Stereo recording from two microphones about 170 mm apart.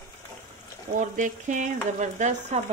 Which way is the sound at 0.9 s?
50° right (ahead or behind).